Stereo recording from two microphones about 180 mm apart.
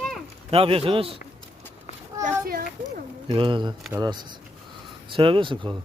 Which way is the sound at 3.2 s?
30° right (ahead or behind).